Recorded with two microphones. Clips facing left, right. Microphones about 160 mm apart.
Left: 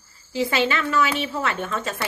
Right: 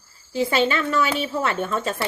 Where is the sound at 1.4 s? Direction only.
35° right (ahead or behind).